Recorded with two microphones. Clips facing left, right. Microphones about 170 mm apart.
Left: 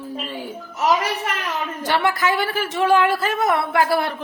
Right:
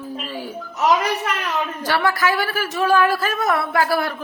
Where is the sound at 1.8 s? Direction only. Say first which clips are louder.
Even; 25° left (ahead or behind).